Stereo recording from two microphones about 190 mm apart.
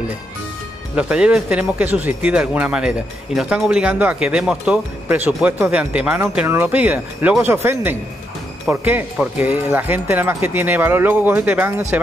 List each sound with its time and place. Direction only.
0.9 s speech: 5° right (ahead or behind)